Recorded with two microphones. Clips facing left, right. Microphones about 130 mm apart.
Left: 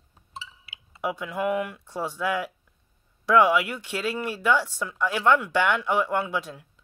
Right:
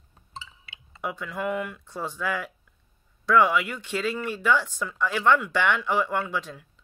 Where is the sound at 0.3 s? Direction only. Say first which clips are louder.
Left 1 dB; 5° left (ahead or behind).